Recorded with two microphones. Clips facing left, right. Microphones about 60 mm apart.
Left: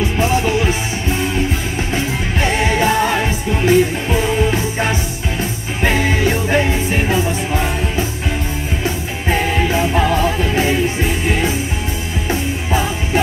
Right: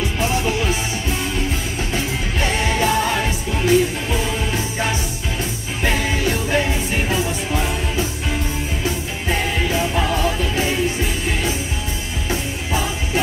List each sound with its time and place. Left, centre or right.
0.2 s music: left
2.4 s music: left
9.3 s music: left